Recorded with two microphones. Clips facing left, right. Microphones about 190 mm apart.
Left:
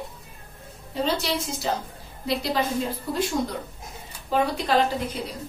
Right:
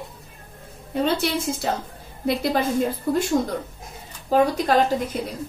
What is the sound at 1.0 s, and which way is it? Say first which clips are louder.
A woman's voice: right 3 dB; 55° right (ahead or behind).